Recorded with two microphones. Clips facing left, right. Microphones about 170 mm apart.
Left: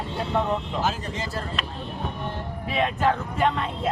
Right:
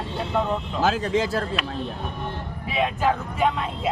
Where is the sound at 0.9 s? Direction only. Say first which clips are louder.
Right 7 dB; 90° right.